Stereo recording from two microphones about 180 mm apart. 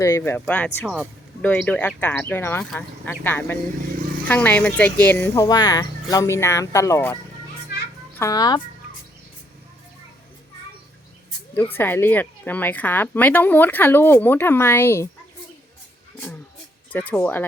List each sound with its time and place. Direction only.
0.0 s speech: 15° left (ahead or behind)
8.2 s speech: 20° left (ahead or behind)
11.5 s speech: 10° left (ahead or behind)
16.9 s speech: 10° left (ahead or behind)